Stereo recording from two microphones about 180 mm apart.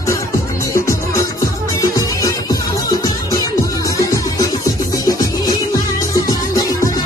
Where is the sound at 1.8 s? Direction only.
20° left (ahead or behind).